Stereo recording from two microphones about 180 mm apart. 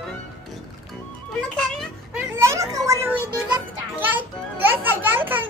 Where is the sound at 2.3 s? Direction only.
15° right (ahead or behind).